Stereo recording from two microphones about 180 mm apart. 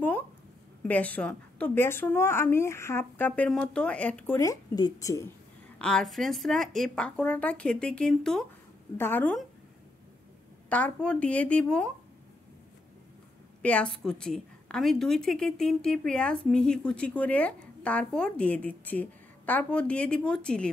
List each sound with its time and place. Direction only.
0.8 s a woman's voice: 10° left (ahead or behind)
4.4 s speech: 20° left (ahead or behind)
5.8 s a woman's voice: 5° left (ahead or behind)
10.7 s a woman's voice: 5° left (ahead or behind)
13.6 s a woman's voice: 5° left (ahead or behind)